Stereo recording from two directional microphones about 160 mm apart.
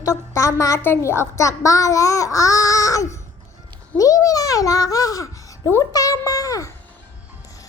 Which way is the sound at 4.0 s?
20° left (ahead or behind).